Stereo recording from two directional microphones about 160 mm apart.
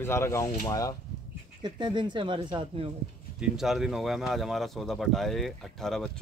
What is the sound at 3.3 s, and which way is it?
Speech, centre (ahead or behind).